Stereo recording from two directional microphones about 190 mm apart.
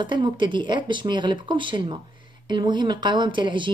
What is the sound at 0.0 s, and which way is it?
Speech, 25° right (ahead or behind).